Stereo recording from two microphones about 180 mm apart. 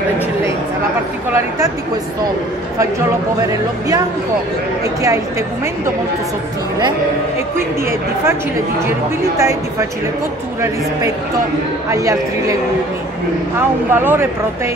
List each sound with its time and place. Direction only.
9.4 s speech: 15° right (ahead or behind)
11.9 s speech: 20° right (ahead or behind)
13.6 s speech: 10° right (ahead or behind)